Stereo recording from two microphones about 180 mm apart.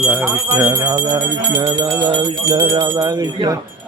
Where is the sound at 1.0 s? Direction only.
25° right (ahead or behind).